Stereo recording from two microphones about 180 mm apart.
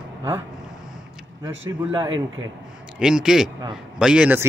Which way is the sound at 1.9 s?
25° right (ahead or behind).